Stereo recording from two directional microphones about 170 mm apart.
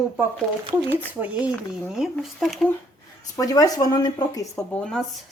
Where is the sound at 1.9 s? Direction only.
Centre (ahead or behind).